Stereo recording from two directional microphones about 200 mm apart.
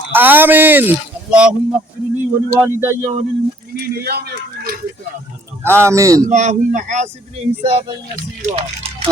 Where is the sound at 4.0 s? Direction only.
50° right (ahead or behind).